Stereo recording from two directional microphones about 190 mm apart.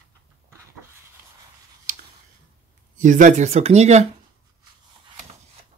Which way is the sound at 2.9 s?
40° right (ahead or behind).